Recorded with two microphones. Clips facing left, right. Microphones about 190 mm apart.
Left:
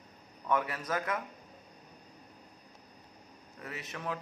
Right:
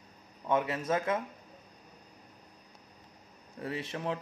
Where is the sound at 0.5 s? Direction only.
25° right (ahead or behind).